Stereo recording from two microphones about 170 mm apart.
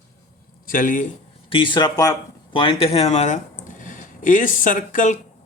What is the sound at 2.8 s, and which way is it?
Speech, 35° left (ahead or behind).